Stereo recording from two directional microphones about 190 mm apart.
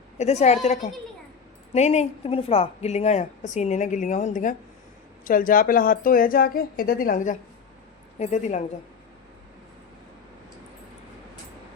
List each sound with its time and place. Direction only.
0.2 s a woman's voice: 35° left (ahead or behind)